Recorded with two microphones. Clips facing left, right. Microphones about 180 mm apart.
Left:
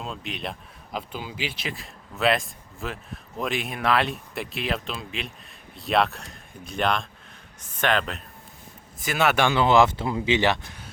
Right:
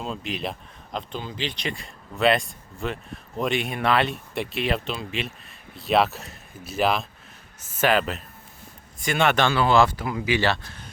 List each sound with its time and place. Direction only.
0.0 s a man's voice: centre (ahead or behind); by 10.8 s 15° left (ahead or behind)